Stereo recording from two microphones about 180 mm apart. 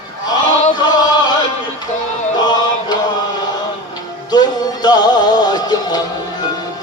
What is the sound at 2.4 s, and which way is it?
Music, 25° left (ahead or behind).